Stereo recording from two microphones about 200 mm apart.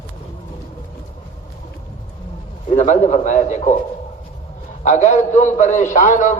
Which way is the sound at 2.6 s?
35° left (ahead or behind).